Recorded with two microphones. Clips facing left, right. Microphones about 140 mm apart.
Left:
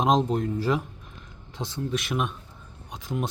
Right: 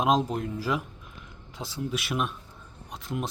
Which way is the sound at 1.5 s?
5° right (ahead or behind).